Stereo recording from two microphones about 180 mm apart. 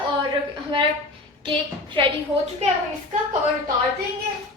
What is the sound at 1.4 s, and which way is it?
Speech, 25° right (ahead or behind).